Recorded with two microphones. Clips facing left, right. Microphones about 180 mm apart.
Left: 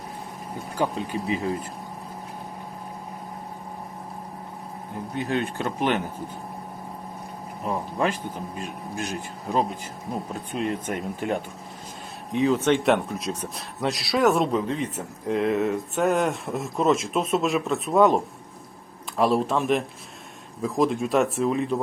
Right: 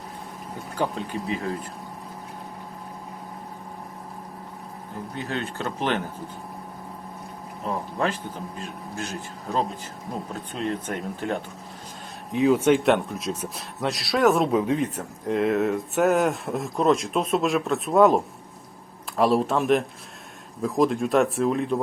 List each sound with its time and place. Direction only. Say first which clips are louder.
5.1 s a man's voice: left 4 dB; 15° left (ahead or behind)
7.6 s a man's voice: left 1 dB; 10° left (ahead or behind)
12.3 s speech: right 2 dB; 5° right (ahead or behind)